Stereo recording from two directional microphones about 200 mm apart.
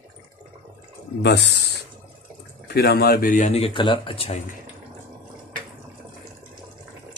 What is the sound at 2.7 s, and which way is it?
Speech, 50° left (ahead or behind).